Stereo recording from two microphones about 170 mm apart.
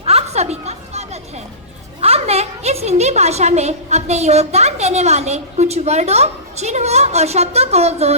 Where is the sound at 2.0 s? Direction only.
35° right (ahead or behind).